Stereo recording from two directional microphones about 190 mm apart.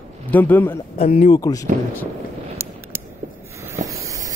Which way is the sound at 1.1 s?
35° left (ahead or behind).